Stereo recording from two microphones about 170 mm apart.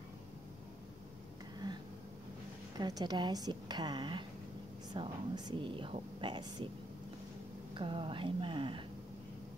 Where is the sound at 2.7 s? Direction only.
25° right (ahead or behind).